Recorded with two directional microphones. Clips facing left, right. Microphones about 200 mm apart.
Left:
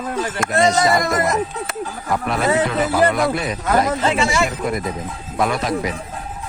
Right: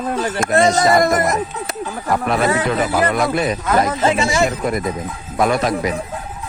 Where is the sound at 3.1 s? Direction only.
50° right (ahead or behind).